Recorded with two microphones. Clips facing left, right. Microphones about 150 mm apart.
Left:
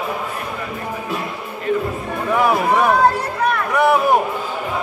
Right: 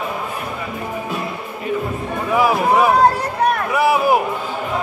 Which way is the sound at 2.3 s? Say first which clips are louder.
Right 1 dB; 5° right (ahead or behind).